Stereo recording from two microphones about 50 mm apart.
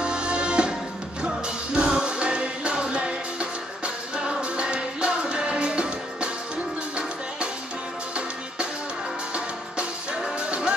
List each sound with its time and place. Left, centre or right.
0.0 s music: centre
9.3 s music: centre